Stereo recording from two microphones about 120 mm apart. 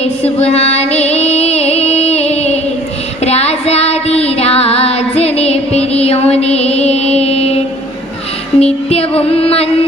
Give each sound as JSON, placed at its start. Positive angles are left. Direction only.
{"t": 0.0, "sound": "music", "side_deg": 60}